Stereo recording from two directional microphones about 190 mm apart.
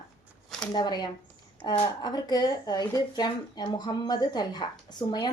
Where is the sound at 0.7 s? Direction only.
20° left (ahead or behind).